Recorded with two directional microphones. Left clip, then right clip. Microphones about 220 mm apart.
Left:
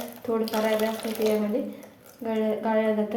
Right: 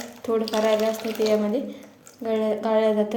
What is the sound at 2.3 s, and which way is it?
Speech, 45° right (ahead or behind).